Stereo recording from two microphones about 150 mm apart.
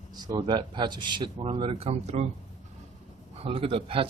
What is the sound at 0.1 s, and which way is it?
Speech, 25° right (ahead or behind).